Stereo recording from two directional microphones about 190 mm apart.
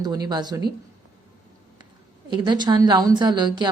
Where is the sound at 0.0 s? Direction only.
20° right (ahead or behind).